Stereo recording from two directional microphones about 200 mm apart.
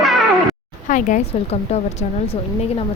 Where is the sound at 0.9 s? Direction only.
35° left (ahead or behind).